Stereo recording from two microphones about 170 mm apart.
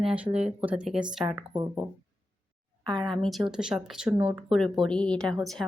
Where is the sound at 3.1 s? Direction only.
Centre (ahead or behind).